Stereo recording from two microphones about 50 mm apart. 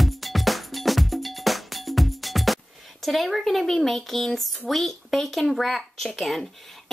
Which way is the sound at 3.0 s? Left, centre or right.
Centre.